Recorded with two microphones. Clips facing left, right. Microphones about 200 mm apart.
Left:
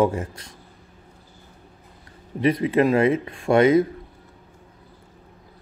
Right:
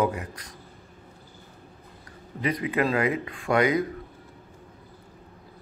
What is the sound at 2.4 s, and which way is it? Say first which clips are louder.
A man's voice: left 7 dB; 25° left (ahead or behind).